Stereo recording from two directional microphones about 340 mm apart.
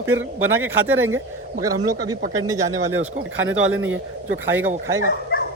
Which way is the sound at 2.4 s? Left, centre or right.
Centre.